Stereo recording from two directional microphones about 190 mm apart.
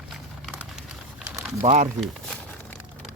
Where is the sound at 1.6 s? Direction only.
40° right (ahead or behind).